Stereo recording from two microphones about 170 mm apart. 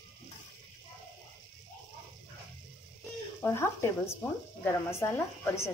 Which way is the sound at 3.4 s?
15° left (ahead or behind).